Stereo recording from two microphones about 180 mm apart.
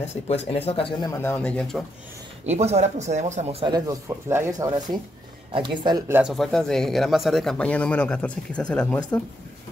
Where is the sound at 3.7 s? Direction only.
15° right (ahead or behind).